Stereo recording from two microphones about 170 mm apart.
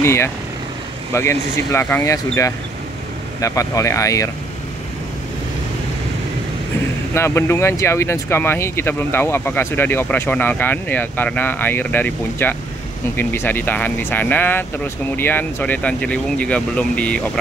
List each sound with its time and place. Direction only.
0.0 s speech: 15° left (ahead or behind)
7.2 s speech: 15° left (ahead or behind)